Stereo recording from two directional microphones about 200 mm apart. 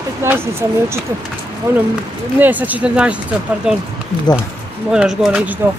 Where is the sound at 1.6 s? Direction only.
15° right (ahead or behind).